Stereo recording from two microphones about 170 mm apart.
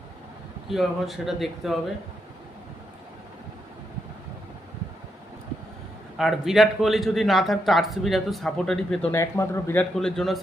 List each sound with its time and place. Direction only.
0.7 s a man's voice: centre (ahead or behind)
6.1 s a man's voice: centre (ahead or behind)
9.1 s a man's voice: 15° left (ahead or behind)
9.9 s a man's voice: centre (ahead or behind)